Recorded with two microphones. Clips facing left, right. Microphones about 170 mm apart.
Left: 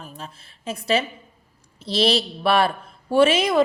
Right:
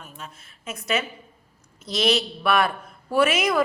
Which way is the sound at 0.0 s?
30° left (ahead or behind).